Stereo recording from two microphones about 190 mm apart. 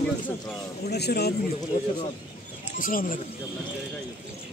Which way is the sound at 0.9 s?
60° left (ahead or behind).